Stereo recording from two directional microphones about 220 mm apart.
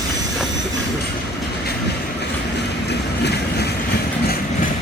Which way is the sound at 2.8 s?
50° left (ahead or behind).